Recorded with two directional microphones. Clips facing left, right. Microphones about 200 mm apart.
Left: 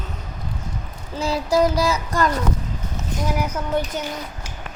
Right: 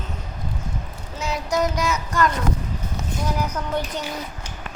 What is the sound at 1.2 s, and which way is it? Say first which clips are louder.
Child singing: left 5 dB; 30° left (ahead or behind).